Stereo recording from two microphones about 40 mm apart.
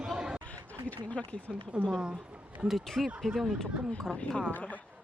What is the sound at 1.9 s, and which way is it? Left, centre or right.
Speech, right.